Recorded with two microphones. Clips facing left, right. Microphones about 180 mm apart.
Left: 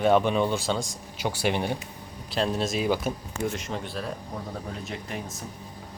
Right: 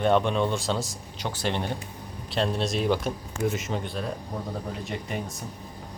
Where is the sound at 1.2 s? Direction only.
10° left (ahead or behind).